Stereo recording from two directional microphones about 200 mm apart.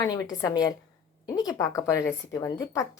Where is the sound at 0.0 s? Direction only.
15° left (ahead or behind).